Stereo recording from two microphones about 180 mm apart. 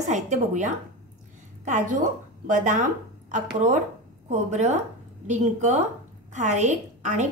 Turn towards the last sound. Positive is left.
turn(degrees=-40)  # may be behind; listen again after turning